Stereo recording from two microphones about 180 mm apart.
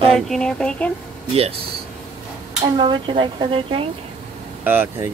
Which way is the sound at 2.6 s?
25° right (ahead or behind).